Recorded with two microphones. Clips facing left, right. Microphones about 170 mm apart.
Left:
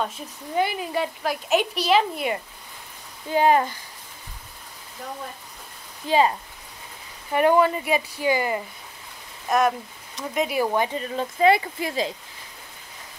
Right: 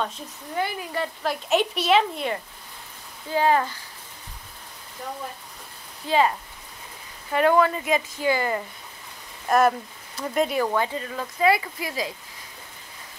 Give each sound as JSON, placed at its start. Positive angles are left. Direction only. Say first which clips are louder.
{"t": 0.6, "sound": "speech", "louder": "left 3 dB", "side_deg": 15}
{"t": 1.2, "sound": "speech", "louder": "right 2 dB", "side_deg": 5}
{"t": 3.3, "sound": "speech", "louder": "left 2 dB", "side_deg": 20}
{"t": 6.0, "sound": "speech", "louder": "left 1 dB", "side_deg": 20}
{"t": 7.3, "sound": "speech", "louder": "left 1 dB", "side_deg": 15}
{"t": 9.5, "sound": "speech", "louder": "right 2 dB", "side_deg": 0}
{"t": 10.7, "sound": "speech", "louder": "left 1 dB", "side_deg": 20}